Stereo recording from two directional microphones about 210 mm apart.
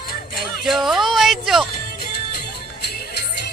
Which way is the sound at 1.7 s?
45° left (ahead or behind).